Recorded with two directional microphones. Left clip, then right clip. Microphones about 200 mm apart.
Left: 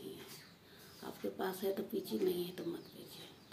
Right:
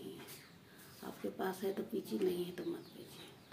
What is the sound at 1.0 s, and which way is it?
Speech, 5° right (ahead or behind).